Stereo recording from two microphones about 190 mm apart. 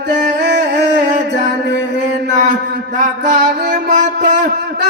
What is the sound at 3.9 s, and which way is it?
Music, 40° right (ahead or behind).